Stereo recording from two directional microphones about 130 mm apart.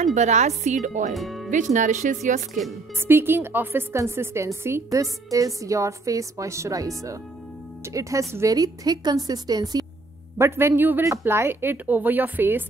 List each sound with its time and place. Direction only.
0.0 s speech: 65° right (ahead or behind)
1.1 s speech: centre (ahead or behind)
1.5 s speech: 70° right (ahead or behind)
3.0 s a woman's voice: 20° right (ahead or behind)
10.3 s speech: 20° right (ahead or behind)